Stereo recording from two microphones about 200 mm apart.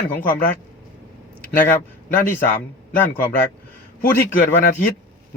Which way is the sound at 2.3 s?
10° left (ahead or behind).